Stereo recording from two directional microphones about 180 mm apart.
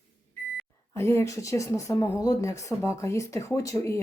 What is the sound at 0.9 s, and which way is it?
Speech, 15° left (ahead or behind).